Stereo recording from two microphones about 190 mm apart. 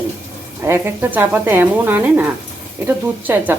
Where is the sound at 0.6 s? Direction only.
10° right (ahead or behind).